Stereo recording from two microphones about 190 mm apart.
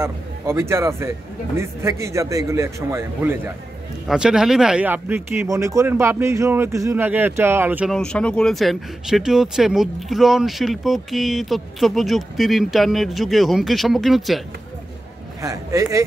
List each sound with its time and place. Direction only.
0.0 s speech: 15° right (ahead or behind)
7.9 s speech: 5° left (ahead or behind)
15.4 s speech: 15° right (ahead or behind)